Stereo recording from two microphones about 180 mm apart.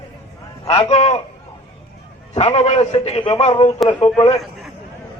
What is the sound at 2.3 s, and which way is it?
A man's voice, 35° left (ahead or behind).